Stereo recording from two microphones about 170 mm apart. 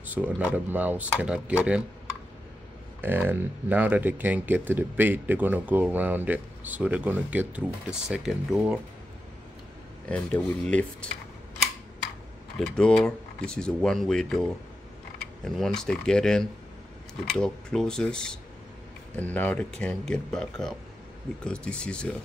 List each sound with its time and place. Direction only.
0.0 s a sound: 10° right (ahead or behind)
0.5 s speech: 10° right (ahead or behind)
3.0 s speech: 10° right (ahead or behind)
10.0 s speech: 5° left (ahead or behind)
12.5 s speech: 5° left (ahead or behind)
15.4 s speech: 5° left (ahead or behind)